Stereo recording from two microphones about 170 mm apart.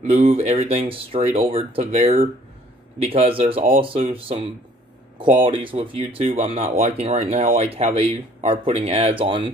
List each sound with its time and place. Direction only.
0.1 s speech: 35° right (ahead or behind)